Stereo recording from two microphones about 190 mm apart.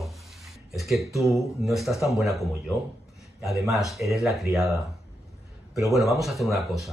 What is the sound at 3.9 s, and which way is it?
Speech, centre (ahead or behind).